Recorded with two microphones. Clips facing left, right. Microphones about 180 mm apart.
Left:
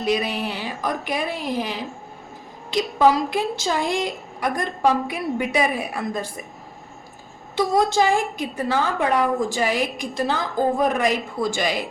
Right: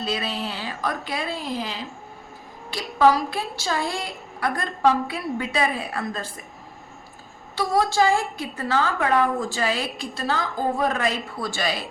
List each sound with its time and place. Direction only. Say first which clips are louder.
0.0 s a woman's voice: left 5 dB; 15° left (ahead or behind)
7.5 s a woman's voice: left 3 dB; 20° left (ahead or behind)